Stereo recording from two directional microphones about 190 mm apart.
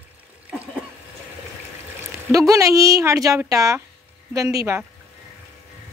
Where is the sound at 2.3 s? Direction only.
15° right (ahead or behind).